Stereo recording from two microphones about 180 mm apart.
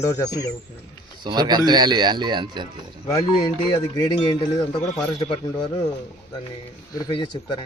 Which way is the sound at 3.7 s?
25° left (ahead or behind).